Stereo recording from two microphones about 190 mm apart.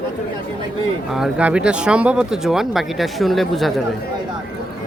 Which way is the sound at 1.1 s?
5° right (ahead or behind).